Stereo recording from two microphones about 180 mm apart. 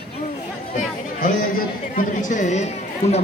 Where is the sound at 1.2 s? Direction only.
50° left (ahead or behind).